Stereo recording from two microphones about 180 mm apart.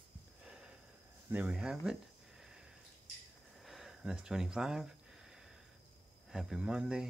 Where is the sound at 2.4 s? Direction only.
5° right (ahead or behind).